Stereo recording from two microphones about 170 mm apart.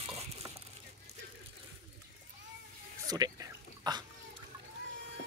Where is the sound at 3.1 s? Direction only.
25° right (ahead or behind).